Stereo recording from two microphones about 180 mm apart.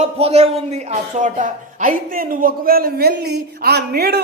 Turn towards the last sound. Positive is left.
turn(degrees=-60)  # may be behind; listen again after turning